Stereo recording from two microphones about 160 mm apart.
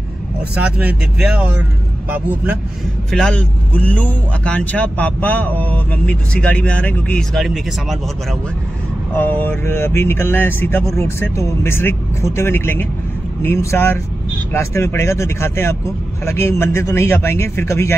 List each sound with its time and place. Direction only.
0.6 s speech: 10° right (ahead or behind)
3.1 s speech: 5° left (ahead or behind)
9.1 s speech: 10° left (ahead or behind)